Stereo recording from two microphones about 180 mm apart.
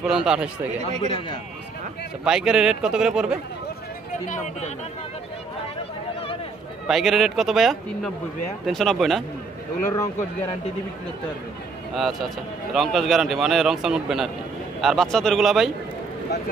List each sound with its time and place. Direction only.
0.0 s a man's voice: 5° right (ahead or behind)
2.2 s a man's voice: 5° right (ahead or behind)
4.1 s speech: 40° left (ahead or behind)
6.9 s a man's voice: centre (ahead or behind)
11.9 s a man's voice: centre (ahead or behind)